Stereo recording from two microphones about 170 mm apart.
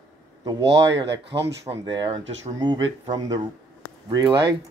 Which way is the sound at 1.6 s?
25° right (ahead or behind).